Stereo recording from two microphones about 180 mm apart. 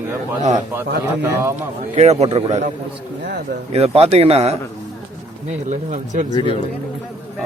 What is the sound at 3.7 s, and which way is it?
Speech, 35° right (ahead or behind).